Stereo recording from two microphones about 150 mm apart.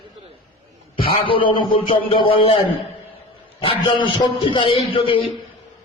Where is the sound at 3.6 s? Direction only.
35° left (ahead or behind).